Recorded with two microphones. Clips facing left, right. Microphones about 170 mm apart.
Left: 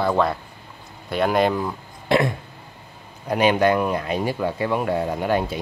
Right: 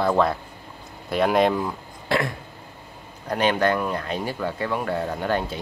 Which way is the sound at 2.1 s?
20° left (ahead or behind).